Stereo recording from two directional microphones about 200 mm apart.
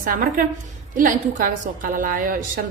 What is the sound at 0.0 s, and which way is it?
A woman's voice, 45° right (ahead or behind).